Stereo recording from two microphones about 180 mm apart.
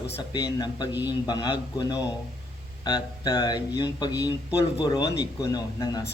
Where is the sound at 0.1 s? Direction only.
25° left (ahead or behind).